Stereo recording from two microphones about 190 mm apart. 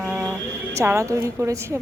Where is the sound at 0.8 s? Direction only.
15° right (ahead or behind).